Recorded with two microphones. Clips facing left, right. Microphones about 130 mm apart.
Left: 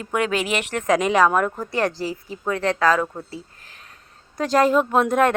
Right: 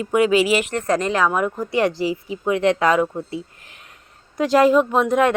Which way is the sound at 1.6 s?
15° right (ahead or behind).